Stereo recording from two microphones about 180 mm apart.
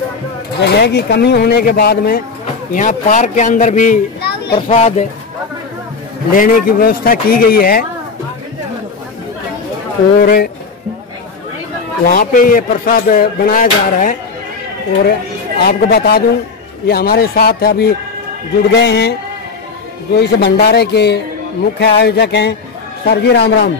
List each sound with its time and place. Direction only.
0.6 s speech: 65° left (ahead or behind)
2.7 s speech: 45° left (ahead or behind)
4.5 s a child's voice: 30° left (ahead or behind)
6.3 s speech: 50° left (ahead or behind)
10.2 s speech: 60° left (ahead or behind)
12.1 s speech: 50° left (ahead or behind)
15.6 s speech: 60° left (ahead or behind)
20.2 s speech: 65° left (ahead or behind)